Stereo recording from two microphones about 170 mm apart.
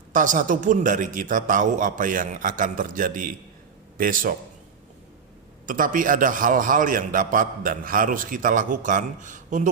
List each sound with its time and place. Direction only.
0.1 s a man's voice: 50° right (ahead or behind)
5.6 s a man's voice: 50° right (ahead or behind)